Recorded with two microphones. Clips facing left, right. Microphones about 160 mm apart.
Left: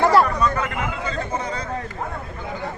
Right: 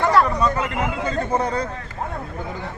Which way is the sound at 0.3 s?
30° right (ahead or behind).